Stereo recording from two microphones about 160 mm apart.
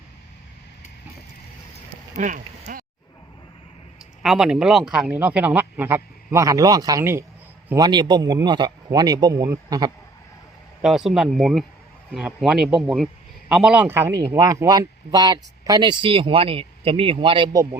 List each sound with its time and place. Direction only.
2.1 s speech: 50° right (ahead or behind)
4.2 s speech: 5° right (ahead or behind)
7.8 s a man's voice: 25° right (ahead or behind)
10.8 s a man's voice: centre (ahead or behind); by 17.5 s 30° right (ahead or behind)
17.5 s a man's voice: 20° right (ahead or behind)